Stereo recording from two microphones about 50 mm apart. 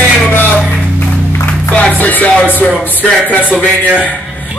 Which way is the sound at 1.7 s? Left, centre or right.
Left.